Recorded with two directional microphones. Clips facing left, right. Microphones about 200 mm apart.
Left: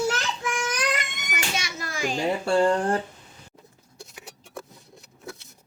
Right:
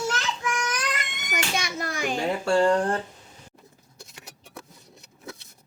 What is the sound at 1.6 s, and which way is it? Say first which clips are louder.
Children playing: right 1 dB; 55° right (ahead or behind).